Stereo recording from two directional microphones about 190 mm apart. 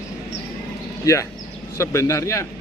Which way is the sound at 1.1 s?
20° left (ahead or behind).